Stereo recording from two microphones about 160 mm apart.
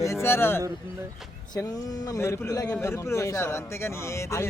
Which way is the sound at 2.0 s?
15° left (ahead or behind).